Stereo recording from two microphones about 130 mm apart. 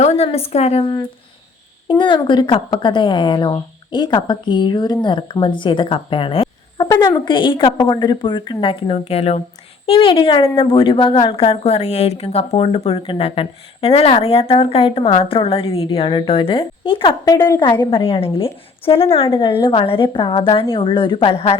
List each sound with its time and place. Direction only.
0.0 s a woman's voice: 55° left (ahead or behind)
1.9 s speech: 35° left (ahead or behind)
6.8 s a woman's voice: 30° left (ahead or behind); by 21.6 s 50° left (ahead or behind)